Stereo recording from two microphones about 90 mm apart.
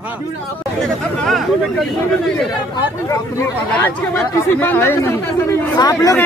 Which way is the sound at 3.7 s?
20° left (ahead or behind).